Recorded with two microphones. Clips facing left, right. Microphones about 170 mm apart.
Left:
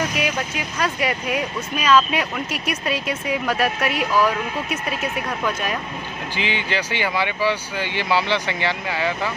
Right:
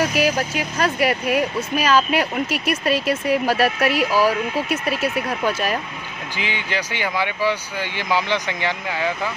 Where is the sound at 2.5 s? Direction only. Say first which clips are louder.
Right 4 dB; centre (ahead or behind).